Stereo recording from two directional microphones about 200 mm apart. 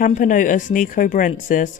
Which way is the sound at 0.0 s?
40° left (ahead or behind).